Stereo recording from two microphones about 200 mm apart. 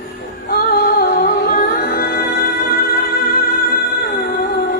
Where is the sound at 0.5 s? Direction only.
50° left (ahead or behind).